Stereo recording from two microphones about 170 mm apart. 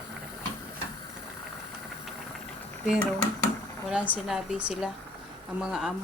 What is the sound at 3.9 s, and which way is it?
Speech, 5° right (ahead or behind).